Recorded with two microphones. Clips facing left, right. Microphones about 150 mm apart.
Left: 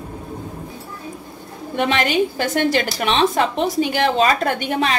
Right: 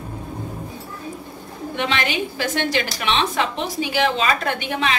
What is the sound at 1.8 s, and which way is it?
A woman's voice, 50° left (ahead or behind).